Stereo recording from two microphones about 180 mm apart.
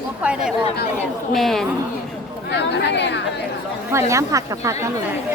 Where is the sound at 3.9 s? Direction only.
15° right (ahead or behind).